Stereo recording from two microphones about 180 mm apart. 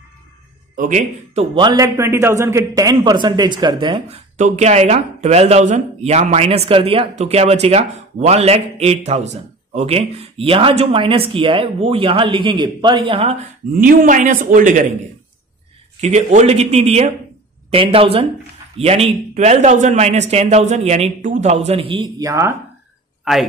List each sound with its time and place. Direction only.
0.7 s a man's voice: 40° right (ahead or behind); by 4.2 s 25° right (ahead or behind)
4.4 s a man's voice: 40° right (ahead or behind)
13.7 s a man's voice: 50° right (ahead or behind)
16.0 s a man's voice: 40° right (ahead or behind)
22.3 s speech: 15° right (ahead or behind)